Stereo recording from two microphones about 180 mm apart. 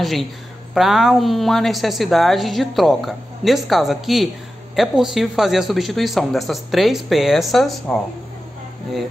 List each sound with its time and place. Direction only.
0.0 s a woman's voice: centre (ahead or behind)